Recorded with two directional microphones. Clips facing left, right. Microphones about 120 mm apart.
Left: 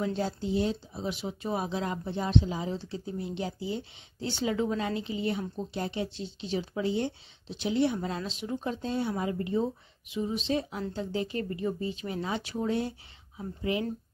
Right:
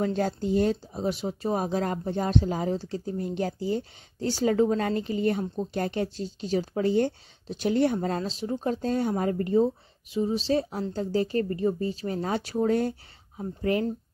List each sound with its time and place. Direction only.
0.0 s speech: 50° right (ahead or behind)